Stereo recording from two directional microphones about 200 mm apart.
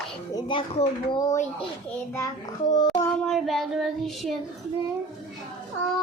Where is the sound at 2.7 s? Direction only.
20° left (ahead or behind).